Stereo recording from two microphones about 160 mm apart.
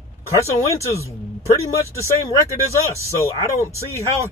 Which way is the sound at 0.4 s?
20° left (ahead or behind).